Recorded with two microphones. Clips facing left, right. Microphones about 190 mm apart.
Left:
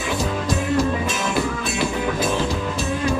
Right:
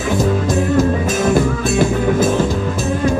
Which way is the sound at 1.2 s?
45° right (ahead or behind).